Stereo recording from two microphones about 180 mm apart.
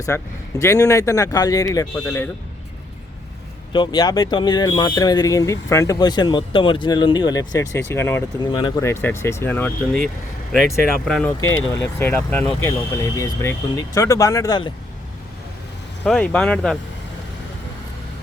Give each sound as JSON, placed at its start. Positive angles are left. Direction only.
{"t": 0.1, "sound": "speech", "side_deg": 15}
{"t": 3.7, "sound": "speech", "side_deg": 25}
{"t": 8.4, "sound": "speech", "side_deg": 25}
{"t": 8.8, "sound": "speech", "side_deg": 15}
{"t": 11.0, "sound": "speech", "side_deg": 5}
{"t": 16.0, "sound": "speech", "side_deg": 5}